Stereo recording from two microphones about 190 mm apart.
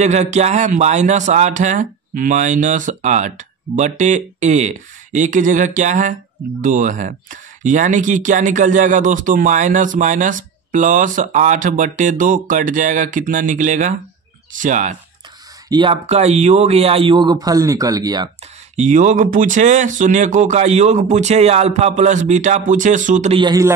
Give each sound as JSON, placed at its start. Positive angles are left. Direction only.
{"t": 0.0, "sound": "speech", "side_deg": -35}
{"t": 15.7, "sound": "speech", "side_deg": -25}
{"t": 18.8, "sound": "speech", "side_deg": -40}
{"t": 23.3, "sound": "speech", "side_deg": -20}